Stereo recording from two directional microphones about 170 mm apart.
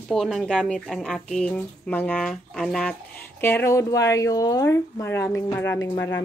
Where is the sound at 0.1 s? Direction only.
Centre (ahead or behind).